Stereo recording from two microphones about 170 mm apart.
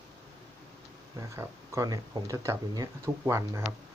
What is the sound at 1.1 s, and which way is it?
Speech, 20° right (ahead or behind).